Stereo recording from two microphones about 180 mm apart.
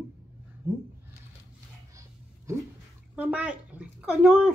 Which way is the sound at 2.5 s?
15° right (ahead or behind).